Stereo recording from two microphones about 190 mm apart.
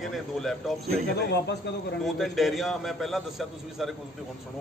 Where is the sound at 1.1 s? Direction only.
60° left (ahead or behind).